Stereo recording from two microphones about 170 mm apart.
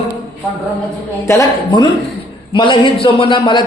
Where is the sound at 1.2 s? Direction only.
20° left (ahead or behind).